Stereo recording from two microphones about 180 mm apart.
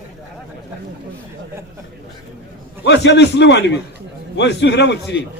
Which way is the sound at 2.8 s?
75° left (ahead or behind).